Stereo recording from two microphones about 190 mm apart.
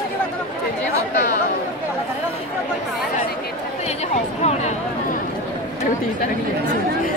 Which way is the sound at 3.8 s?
35° left (ahead or behind).